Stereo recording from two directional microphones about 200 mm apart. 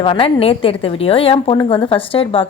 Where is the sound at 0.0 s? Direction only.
25° left (ahead or behind).